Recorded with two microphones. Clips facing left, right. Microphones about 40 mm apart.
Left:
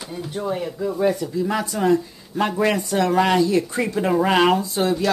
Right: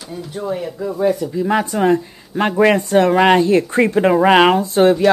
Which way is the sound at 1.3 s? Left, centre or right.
Right.